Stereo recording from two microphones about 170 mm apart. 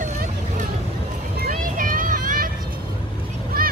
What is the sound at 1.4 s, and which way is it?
Vehicle, 55° right (ahead or behind).